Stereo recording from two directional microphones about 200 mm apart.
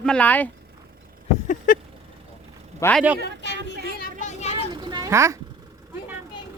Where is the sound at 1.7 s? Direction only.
40° left (ahead or behind).